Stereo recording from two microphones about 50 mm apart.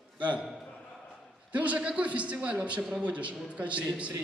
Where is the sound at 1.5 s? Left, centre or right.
Right.